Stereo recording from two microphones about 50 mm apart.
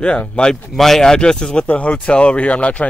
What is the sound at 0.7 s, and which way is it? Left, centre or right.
Speech, centre.